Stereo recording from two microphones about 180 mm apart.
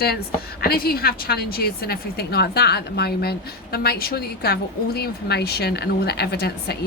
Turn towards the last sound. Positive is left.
turn(degrees=60)  # may be behind; listen again after turning